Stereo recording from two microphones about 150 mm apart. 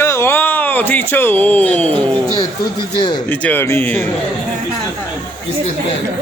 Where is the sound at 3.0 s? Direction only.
30° left (ahead or behind).